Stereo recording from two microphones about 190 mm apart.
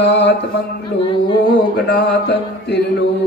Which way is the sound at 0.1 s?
65° left (ahead or behind).